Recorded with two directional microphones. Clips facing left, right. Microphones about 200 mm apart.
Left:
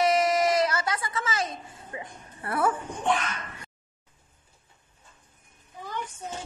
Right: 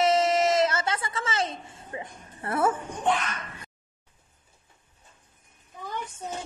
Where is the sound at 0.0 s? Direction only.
25° right (ahead or behind).